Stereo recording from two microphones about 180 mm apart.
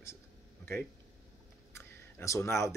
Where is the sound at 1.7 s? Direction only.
15° left (ahead or behind).